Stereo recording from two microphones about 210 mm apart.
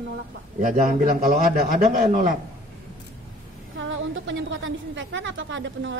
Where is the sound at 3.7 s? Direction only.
65° right (ahead or behind).